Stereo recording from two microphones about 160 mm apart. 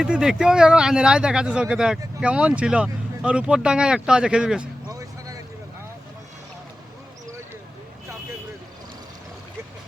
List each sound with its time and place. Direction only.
0.0 s speech: 5° right (ahead or behind)
4.9 s music: 20° right (ahead or behind)